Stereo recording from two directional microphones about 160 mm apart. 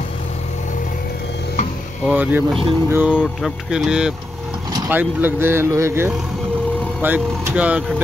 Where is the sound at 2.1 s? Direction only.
10° right (ahead or behind).